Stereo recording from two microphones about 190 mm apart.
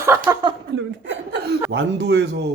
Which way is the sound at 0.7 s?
75° right (ahead or behind).